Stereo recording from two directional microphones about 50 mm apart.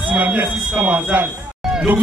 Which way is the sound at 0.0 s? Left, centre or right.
Right.